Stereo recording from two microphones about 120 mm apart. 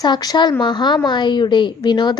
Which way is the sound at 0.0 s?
35° left (ahead or behind).